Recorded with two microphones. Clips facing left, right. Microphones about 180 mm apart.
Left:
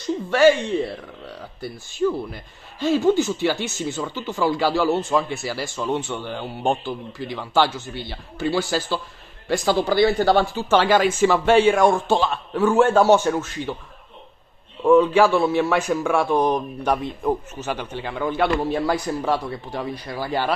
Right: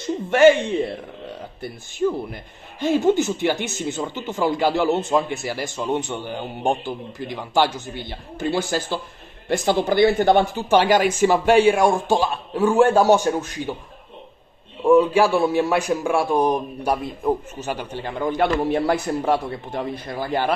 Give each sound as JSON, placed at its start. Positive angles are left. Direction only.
{"t": 0.0, "sound": "a sound", "side_deg": -20}
{"t": 2.0, "sound": "speech", "side_deg": -30}
{"t": 14.9, "sound": "speech", "side_deg": -10}
{"t": 17.9, "sound": "a man's voice", "side_deg": -45}